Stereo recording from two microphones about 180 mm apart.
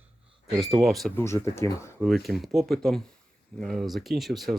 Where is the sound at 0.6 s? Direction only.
Centre (ahead or behind).